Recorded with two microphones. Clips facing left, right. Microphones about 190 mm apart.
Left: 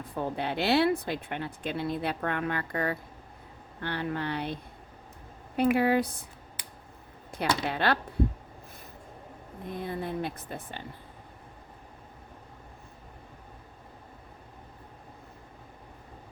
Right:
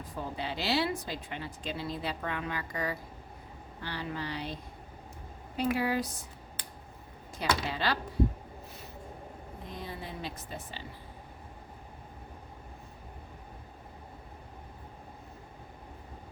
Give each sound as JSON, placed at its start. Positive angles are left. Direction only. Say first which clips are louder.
{"t": 0.2, "sound": "speech", "louder": "left 6 dB", "side_deg": 60}
{"t": 5.7, "sound": "speech", "louder": "left 6 dB", "side_deg": 55}
{"t": 7.3, "sound": "speech", "louder": "left 3 dB", "side_deg": 60}
{"t": 9.6, "sound": "speech", "louder": "left 8 dB", "side_deg": 55}